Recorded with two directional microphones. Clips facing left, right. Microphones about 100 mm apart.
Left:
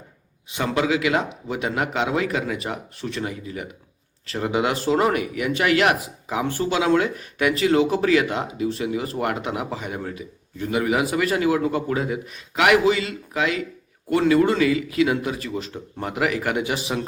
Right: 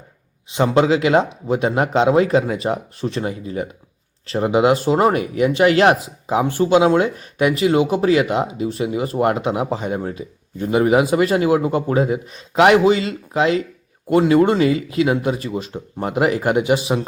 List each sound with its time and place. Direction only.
0.5 s speech: 25° right (ahead or behind)